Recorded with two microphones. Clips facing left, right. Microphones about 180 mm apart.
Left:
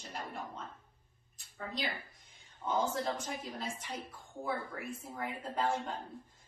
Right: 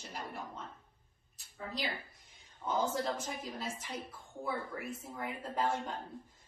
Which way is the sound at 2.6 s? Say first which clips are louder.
Even; centre (ahead or behind).